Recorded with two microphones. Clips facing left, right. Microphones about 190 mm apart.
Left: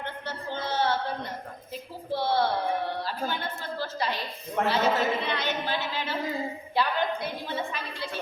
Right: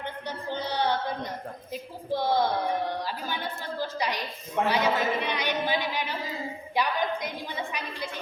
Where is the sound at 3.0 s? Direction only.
15° right (ahead or behind).